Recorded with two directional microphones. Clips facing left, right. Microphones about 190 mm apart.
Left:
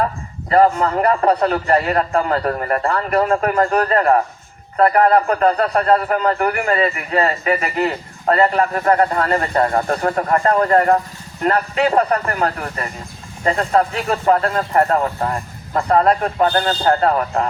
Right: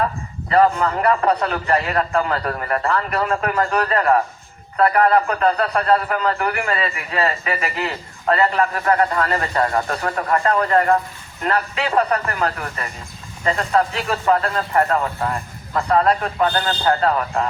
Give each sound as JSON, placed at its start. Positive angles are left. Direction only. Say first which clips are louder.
{"t": 0.5, "sound": "a man's voice", "louder": "left 2 dB", "side_deg": 35}